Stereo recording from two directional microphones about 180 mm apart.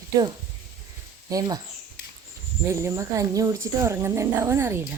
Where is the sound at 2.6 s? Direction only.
15° right (ahead or behind).